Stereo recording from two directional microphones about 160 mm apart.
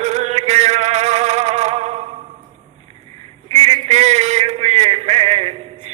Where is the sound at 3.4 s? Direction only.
40° right (ahead or behind).